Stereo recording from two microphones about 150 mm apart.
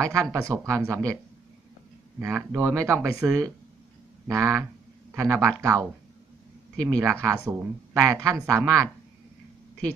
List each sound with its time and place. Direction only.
0.1 s a woman's voice: 20° right (ahead or behind)
2.1 s a woman's voice: 15° right (ahead or behind)
7.0 s a woman's voice: 20° right (ahead or behind)